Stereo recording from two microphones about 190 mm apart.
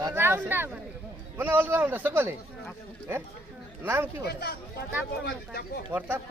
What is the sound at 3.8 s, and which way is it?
Speech, 10° right (ahead or behind).